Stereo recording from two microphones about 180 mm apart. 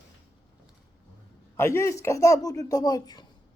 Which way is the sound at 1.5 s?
15° left (ahead or behind).